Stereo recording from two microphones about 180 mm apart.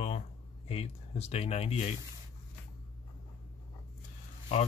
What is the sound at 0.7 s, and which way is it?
Speech, 35° left (ahead or behind).